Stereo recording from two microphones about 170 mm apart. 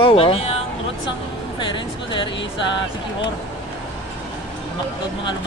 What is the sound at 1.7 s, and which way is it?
Speech, 30° left (ahead or behind).